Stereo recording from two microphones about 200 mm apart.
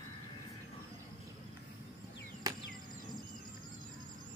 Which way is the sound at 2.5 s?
20° right (ahead or behind).